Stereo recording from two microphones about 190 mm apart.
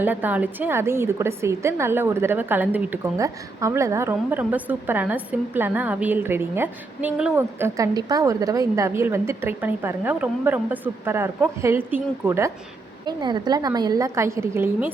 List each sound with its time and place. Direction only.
0.0 s a woman's voice: 10° right (ahead or behind)
13.1 s a woman's voice: 20° right (ahead or behind)